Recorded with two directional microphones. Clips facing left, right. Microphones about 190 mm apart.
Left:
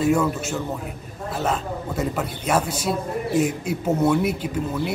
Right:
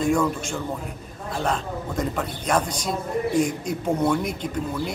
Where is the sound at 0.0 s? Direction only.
5° left (ahead or behind).